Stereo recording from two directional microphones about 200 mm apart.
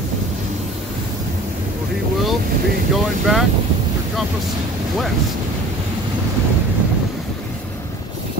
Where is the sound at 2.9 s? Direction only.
Centre (ahead or behind).